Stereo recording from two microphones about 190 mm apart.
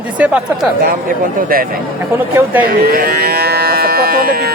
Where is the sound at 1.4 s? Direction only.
50° right (ahead or behind).